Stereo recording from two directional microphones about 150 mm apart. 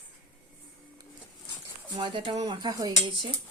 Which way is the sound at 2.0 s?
35° right (ahead or behind).